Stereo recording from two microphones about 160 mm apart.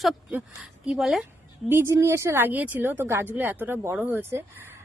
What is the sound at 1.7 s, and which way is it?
Speech, 15° right (ahead or behind).